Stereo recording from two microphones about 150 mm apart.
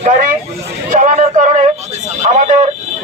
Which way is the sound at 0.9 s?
55° right (ahead or behind).